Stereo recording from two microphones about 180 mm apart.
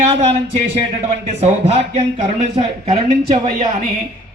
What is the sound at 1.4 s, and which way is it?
Speech, 35° right (ahead or behind).